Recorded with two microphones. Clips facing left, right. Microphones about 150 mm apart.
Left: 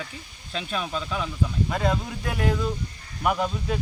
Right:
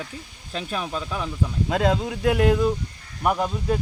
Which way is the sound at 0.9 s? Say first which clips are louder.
Even; 10° right (ahead or behind).